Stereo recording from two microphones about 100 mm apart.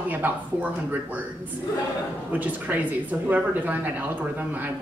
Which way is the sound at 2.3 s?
15° right (ahead or behind).